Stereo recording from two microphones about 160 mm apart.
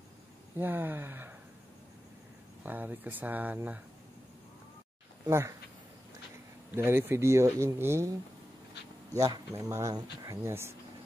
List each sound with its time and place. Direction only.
0.6 s speech: 15° right (ahead or behind)
2.6 s speech: 10° right (ahead or behind)
5.2 s speech: 15° right (ahead or behind)
6.7 s speech: 15° right (ahead or behind)
9.1 s speech: 20° right (ahead or behind)